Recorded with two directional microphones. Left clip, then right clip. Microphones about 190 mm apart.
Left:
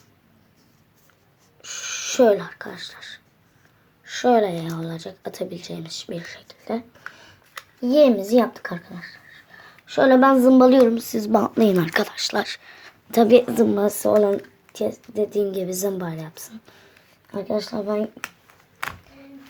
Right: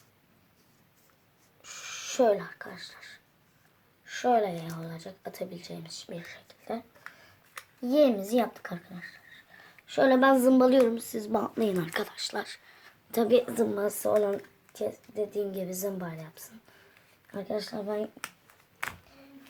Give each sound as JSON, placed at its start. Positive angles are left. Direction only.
{"t": 1.6, "sound": "speech", "side_deg": 40}
{"t": 7.5, "sound": "a sound", "side_deg": 10}
{"t": 8.0, "sound": "a woman's voice", "side_deg": 30}
{"t": 9.6, "sound": "a woman's voice", "side_deg": 15}
{"t": 17.3, "sound": "a woman's voice", "side_deg": 25}